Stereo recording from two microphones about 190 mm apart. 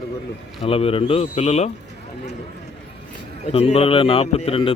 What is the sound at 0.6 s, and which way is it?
A man's voice, 30° left (ahead or behind).